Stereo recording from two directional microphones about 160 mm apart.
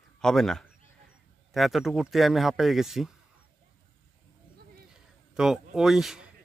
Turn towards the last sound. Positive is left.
turn(degrees=0)  # may be behind; listen again after turning